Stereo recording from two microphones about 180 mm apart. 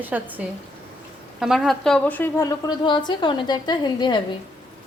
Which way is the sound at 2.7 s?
25° left (ahead or behind).